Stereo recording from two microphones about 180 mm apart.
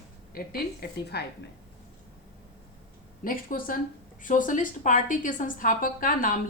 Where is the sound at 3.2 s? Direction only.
50° left (ahead or behind).